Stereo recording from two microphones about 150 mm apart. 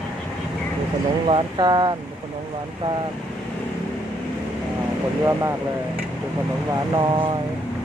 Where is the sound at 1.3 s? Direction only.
30° right (ahead or behind).